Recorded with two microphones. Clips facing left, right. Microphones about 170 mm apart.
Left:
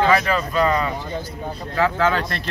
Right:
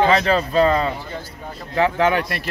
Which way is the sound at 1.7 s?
20° right (ahead or behind).